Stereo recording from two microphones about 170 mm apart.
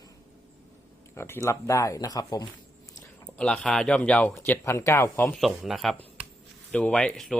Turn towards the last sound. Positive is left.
turn(degrees=0)  # may be behind; listen again after turning